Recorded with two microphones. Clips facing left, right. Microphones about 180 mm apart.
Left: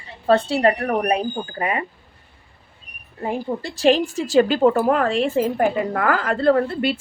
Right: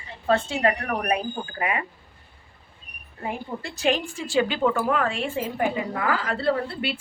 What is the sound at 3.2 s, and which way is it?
A woman's voice, 35° left (ahead or behind).